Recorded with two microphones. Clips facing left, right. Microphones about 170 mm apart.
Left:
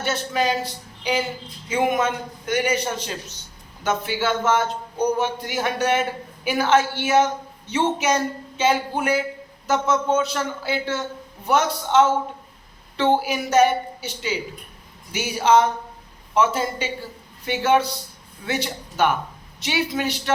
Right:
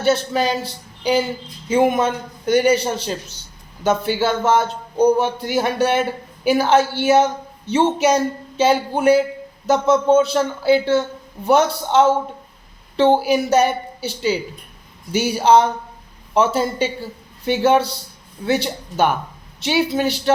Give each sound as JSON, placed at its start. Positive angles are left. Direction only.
{"t": 0.0, "sound": "a man's voice", "side_deg": -30}